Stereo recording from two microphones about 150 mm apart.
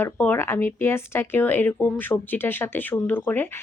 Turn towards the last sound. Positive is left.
turn(degrees=15)  # may be behind; listen again after turning